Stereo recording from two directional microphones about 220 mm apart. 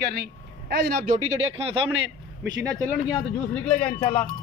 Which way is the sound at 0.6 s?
45° right (ahead or behind).